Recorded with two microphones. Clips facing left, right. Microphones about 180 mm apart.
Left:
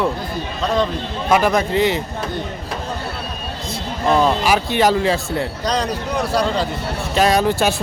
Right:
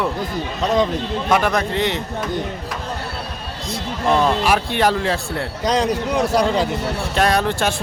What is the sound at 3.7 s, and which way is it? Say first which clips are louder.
Speech: left 1 dB; centre (ahead or behind).